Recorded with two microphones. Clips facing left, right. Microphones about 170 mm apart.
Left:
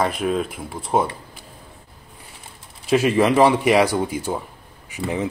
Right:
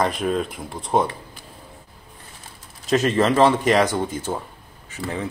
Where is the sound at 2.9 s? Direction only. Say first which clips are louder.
Left 2 dB; 10° left (ahead or behind).